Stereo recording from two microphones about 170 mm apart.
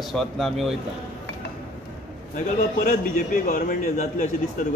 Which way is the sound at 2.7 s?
55° left (ahead or behind).